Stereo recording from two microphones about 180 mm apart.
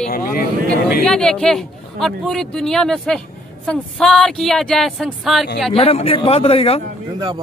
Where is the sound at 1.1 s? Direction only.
5° left (ahead or behind).